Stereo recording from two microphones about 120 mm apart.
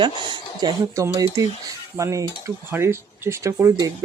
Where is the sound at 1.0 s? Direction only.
25° right (ahead or behind).